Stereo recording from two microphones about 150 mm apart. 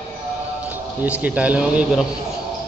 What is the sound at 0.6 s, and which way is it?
A man's voice, 10° right (ahead or behind).